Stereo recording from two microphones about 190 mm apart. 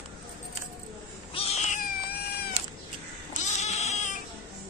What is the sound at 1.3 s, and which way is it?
Cat, 30° left (ahead or behind).